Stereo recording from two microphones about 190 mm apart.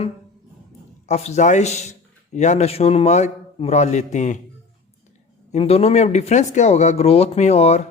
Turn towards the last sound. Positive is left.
turn(degrees=35)  # may be behind; listen again after turning